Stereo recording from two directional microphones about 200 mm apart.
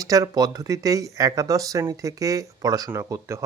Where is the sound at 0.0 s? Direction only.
20° right (ahead or behind).